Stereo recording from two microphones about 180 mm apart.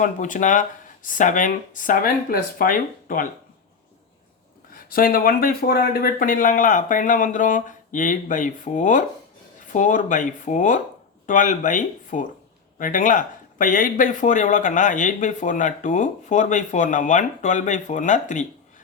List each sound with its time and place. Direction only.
0.0 s speech: 45° left (ahead or behind)
4.7 s speech: 55° left (ahead or behind)